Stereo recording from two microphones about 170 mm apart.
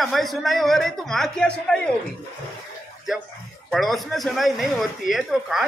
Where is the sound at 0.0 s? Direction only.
Centre (ahead or behind).